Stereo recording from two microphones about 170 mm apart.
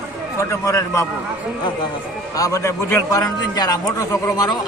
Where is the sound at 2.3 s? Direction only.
20° left (ahead or behind).